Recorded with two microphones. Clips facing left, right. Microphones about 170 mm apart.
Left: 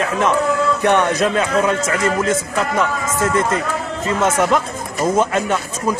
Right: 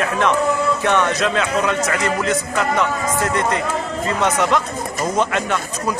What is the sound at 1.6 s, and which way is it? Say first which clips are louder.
Speech: left 2 dB; 25° left (ahead or behind).